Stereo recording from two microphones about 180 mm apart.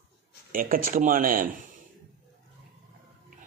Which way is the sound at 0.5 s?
50° right (ahead or behind).